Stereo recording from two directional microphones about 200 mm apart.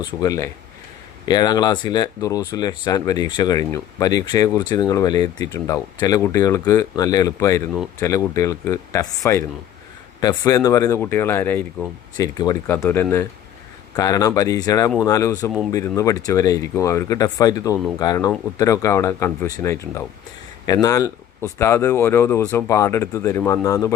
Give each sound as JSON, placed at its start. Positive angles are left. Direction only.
{"t": 0.0, "sound": "speech", "side_deg": 20}